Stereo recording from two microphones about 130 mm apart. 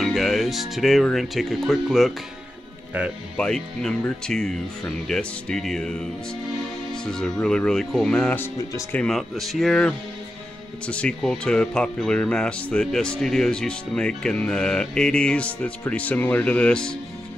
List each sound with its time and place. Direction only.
0.0 s speech: centre (ahead or behind)
3.3 s speech: 5° left (ahead or behind)
7.1 s speech: 5° left (ahead or behind)